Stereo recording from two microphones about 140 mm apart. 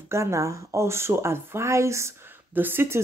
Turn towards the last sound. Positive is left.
turn(degrees=-15)  # may be behind; listen again after turning